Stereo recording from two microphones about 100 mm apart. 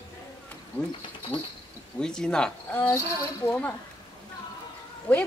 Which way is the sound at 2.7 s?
25° left (ahead or behind).